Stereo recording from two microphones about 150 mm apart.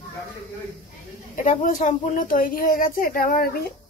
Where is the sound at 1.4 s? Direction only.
60° left (ahead or behind); by 3.6 s 80° left.